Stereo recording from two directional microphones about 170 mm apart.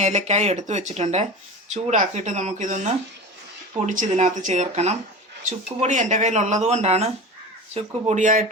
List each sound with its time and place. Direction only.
0.0 s speech: 40° right (ahead or behind)